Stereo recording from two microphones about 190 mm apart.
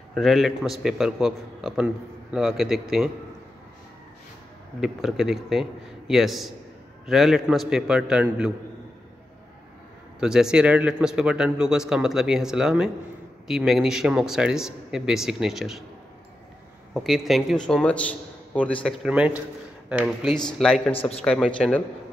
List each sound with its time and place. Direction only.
0.1 s speech: centre (ahead or behind)
4.7 s speech: centre (ahead or behind)
10.2 s speech: 5° right (ahead or behind)
16.9 s speech: centre (ahead or behind)
20.9 s a man's voice: 30° left (ahead or behind)
21.2 s speech: 5° left (ahead or behind)